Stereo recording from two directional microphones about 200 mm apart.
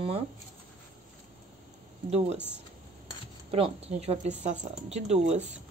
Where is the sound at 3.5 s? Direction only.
30° right (ahead or behind).